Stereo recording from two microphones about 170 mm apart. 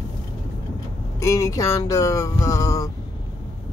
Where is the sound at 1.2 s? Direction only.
20° left (ahead or behind).